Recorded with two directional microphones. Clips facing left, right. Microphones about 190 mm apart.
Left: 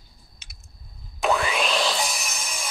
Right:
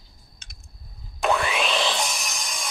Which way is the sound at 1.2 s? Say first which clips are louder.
Even; centre (ahead or behind).